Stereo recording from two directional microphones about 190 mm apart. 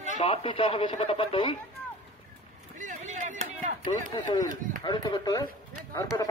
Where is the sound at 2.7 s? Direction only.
40° right (ahead or behind).